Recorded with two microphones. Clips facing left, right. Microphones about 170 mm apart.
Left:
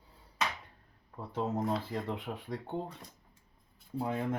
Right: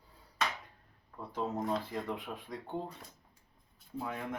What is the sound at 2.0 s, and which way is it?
Speech, 25° left (ahead or behind).